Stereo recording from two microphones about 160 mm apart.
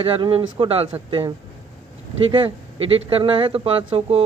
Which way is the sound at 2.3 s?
35° right (ahead or behind).